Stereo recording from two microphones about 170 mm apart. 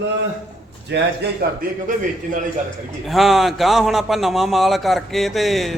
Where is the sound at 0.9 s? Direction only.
90° right.